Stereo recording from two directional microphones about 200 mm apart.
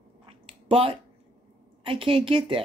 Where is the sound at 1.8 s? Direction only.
25° right (ahead or behind).